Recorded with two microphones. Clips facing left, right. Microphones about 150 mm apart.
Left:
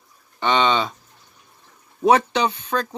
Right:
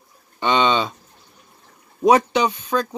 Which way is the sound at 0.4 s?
15° right (ahead or behind).